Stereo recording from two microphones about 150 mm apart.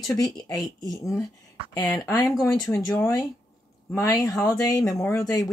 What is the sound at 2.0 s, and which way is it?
Speech, 20° left (ahead or behind).